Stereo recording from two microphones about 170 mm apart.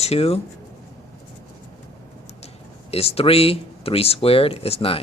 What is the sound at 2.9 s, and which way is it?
Speech, 35° left (ahead or behind).